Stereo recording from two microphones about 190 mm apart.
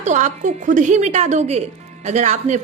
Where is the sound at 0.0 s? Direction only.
40° right (ahead or behind).